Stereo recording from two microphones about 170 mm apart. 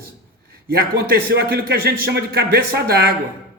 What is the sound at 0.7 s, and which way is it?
A man's voice, 65° right (ahead or behind).